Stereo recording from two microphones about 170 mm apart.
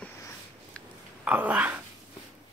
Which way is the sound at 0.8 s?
5° left (ahead or behind).